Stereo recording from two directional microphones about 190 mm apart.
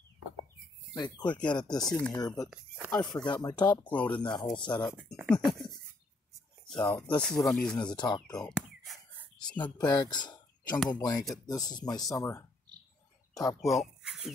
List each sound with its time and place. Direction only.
0.9 s speech: 25° left (ahead or behind)
1.9 s speech: 5° left (ahead or behind)
2.2 s speech: 20° left (ahead or behind)
3.8 s speech: 5° left (ahead or behind)
4.2 s speech: 25° left (ahead or behind)
5.1 s speech: centre (ahead or behind)
7.7 s speech: 20° left (ahead or behind)
8.5 s a sound: centre (ahead or behind)
9.6 s speech: 20° left (ahead or behind)
13.6 s speech: centre (ahead or behind)